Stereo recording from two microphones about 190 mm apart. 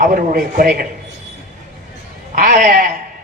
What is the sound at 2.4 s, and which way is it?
Speech, 45° right (ahead or behind).